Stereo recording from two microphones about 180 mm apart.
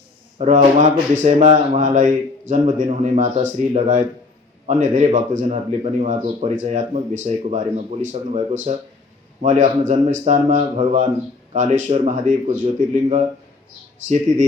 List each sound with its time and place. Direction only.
0.3 s a man's voice: 40° right (ahead or behind)